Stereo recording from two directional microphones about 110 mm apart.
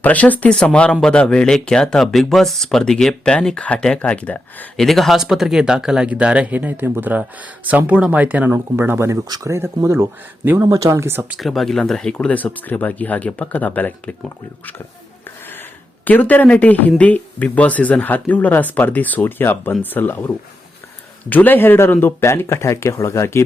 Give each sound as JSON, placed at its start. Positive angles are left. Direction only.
{"t": 0.0, "sound": "speech", "side_deg": 15}
{"t": 4.8, "sound": "speech", "side_deg": 0}
{"t": 11.3, "sound": "speech", "side_deg": 0}
{"t": 16.0, "sound": "speech", "side_deg": 15}